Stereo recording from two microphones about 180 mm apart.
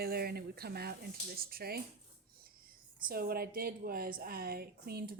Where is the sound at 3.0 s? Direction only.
55° right (ahead or behind).